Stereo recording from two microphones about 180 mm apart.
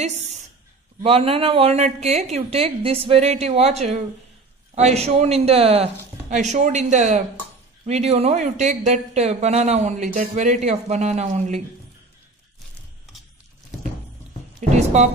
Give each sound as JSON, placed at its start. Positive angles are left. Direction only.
{"t": 1.0, "sound": "speech", "side_deg": -30}
{"t": 14.6, "sound": "speech", "side_deg": -40}